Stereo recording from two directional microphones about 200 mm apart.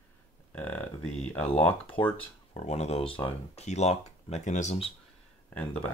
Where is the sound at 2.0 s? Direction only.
25° left (ahead or behind).